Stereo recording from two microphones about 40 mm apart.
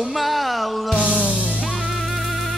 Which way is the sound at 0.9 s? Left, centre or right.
Right.